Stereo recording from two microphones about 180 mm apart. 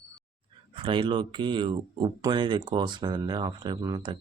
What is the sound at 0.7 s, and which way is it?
Speech, 25° right (ahead or behind).